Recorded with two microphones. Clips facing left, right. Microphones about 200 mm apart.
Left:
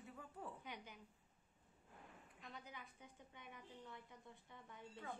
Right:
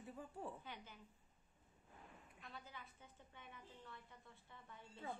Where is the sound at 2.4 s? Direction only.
20° left (ahead or behind).